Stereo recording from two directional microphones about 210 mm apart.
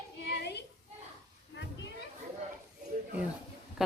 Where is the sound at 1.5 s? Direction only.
55° left (ahead or behind).